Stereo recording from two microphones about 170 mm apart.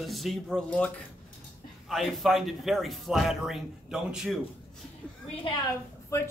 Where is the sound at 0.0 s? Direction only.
Centre (ahead or behind).